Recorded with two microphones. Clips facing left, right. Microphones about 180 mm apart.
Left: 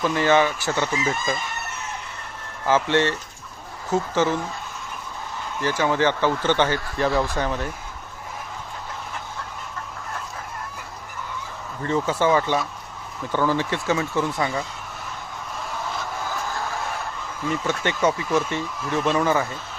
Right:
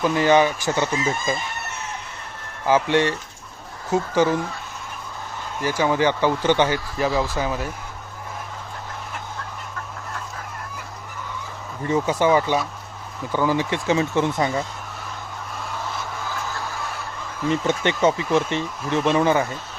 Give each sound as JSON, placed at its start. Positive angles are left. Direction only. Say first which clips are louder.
{"t": 0.0, "sound": "speech", "louder": "right 2 dB", "side_deg": -15}
{"t": 2.6, "sound": "speech", "louder": "right 1 dB", "side_deg": -15}
{"t": 5.6, "sound": "speech", "louder": "right 1 dB", "side_deg": -10}
{"t": 11.8, "sound": "speech", "louder": "right 2 dB", "side_deg": -15}
{"t": 17.5, "sound": "speech", "louder": "right 3 dB", "side_deg": -20}